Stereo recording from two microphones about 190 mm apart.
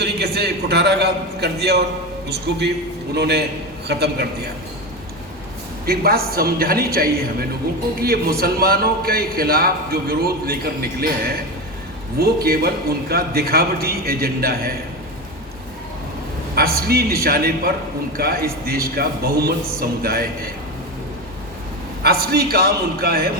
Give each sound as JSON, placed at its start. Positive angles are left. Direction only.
{"t": 0.0, "sound": "a man's voice", "side_deg": -60}
{"t": 3.2, "sound": "a man's voice", "side_deg": -60}
{"t": 5.8, "sound": "a man's voice", "side_deg": -55}
{"t": 16.6, "sound": "a man's voice", "side_deg": -55}
{"t": 22.0, "sound": "a man's voice", "side_deg": -55}